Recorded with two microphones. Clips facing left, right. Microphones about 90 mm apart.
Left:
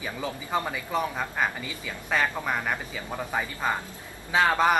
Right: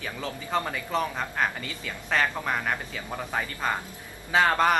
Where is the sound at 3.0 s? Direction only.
15° left (ahead or behind).